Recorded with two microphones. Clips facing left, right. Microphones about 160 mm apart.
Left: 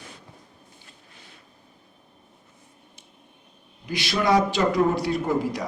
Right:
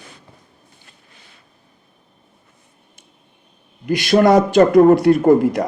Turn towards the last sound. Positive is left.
turn(degrees=-50)  # may be behind; listen again after turning